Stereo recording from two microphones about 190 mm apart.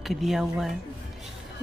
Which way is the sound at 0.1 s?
Centre (ahead or behind).